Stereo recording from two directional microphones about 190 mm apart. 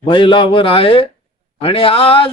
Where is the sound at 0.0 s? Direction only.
25° left (ahead or behind).